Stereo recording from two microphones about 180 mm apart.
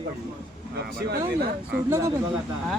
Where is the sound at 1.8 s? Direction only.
15° right (ahead or behind).